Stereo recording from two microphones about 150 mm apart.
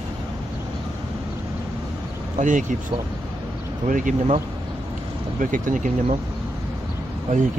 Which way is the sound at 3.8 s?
55° right (ahead or behind).